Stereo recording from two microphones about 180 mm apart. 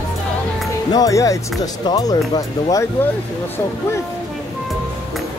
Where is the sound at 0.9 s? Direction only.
20° left (ahead or behind).